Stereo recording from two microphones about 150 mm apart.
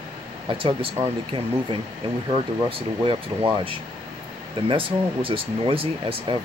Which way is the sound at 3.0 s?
35° right (ahead or behind).